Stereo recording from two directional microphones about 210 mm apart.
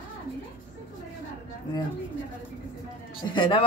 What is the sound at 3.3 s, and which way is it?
Speech, 20° left (ahead or behind).